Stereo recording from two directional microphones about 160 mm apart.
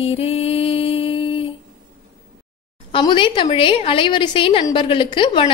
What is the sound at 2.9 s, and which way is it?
A woman's voice, 30° left (ahead or behind).